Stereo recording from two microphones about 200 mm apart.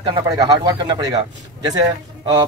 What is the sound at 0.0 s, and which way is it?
A man's voice, 20° right (ahead or behind).